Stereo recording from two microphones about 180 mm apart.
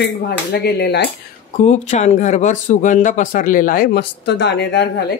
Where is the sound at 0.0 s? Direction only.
65° left (ahead or behind).